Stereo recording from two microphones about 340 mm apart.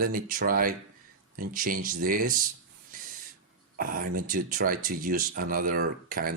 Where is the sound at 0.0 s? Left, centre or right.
Right.